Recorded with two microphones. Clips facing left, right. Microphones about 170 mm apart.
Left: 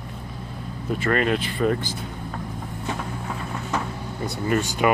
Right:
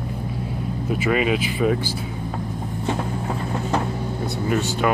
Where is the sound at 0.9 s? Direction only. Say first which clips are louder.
Right 1 dB; 5° right (ahead or behind).